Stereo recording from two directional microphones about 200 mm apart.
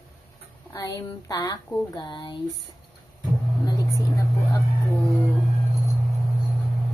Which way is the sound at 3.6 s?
15° left (ahead or behind).